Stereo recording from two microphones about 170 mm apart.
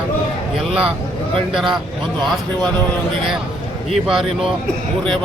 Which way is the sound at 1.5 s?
Centre (ahead or behind).